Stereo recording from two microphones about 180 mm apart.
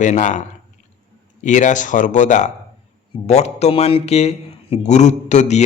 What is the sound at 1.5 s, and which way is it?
Speech, 45° left (ahead or behind).